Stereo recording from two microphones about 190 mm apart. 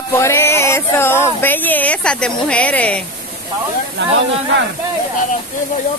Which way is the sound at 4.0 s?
60° right (ahead or behind).